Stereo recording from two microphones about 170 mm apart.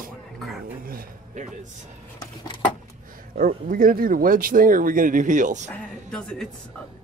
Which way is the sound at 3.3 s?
55° right (ahead or behind).